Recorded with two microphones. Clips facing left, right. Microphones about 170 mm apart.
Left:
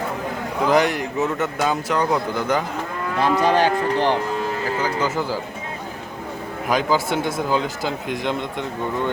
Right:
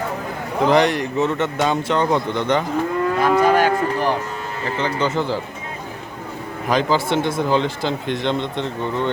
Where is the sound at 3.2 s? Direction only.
30° left (ahead or behind).